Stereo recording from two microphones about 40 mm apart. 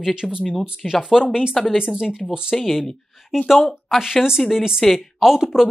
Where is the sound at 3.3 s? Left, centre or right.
Centre.